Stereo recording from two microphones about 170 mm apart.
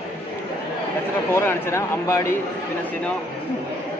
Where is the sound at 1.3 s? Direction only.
15° left (ahead or behind).